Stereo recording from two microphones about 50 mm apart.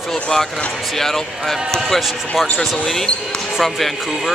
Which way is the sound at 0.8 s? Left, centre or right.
Centre.